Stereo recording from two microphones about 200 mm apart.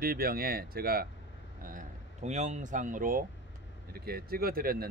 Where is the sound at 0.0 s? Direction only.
45° right (ahead or behind).